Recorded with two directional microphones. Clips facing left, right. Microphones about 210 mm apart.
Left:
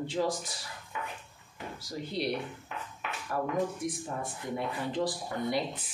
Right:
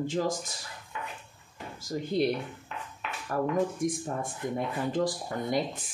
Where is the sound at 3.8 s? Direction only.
45° right (ahead or behind).